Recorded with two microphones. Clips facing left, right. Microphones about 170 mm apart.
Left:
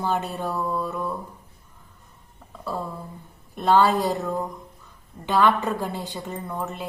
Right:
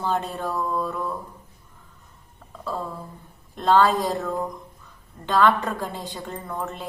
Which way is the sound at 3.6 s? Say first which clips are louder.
Even; 10° left (ahead or behind).